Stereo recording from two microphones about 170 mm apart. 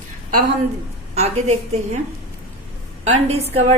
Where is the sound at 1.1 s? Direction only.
40° right (ahead or behind).